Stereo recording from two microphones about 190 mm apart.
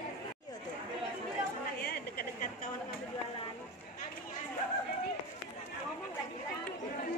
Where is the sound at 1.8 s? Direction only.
55° left (ahead or behind).